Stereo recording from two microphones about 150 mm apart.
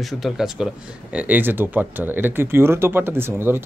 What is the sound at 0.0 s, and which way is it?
Speech, centre (ahead or behind).